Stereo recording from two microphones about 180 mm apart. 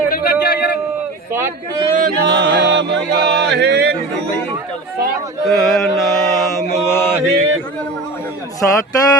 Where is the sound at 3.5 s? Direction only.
70° right (ahead or behind).